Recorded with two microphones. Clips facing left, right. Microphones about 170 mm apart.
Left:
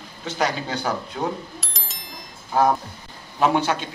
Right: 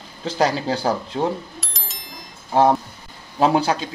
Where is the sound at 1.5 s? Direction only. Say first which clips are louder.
Even; centre (ahead or behind).